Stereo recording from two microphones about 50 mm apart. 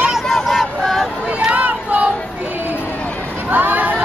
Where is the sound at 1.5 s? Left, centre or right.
Right.